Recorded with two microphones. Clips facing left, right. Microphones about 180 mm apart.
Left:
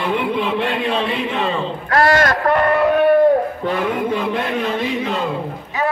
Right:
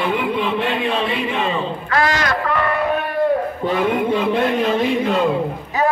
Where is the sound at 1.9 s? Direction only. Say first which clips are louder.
Left 5 dB; 50° left (ahead or behind).